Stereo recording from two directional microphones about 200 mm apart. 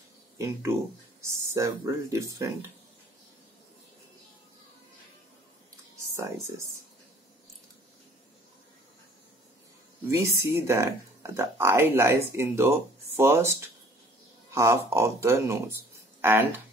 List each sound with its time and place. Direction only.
0.4 s speech: 15° right (ahead or behind)
10.0 s speech: 15° right (ahead or behind)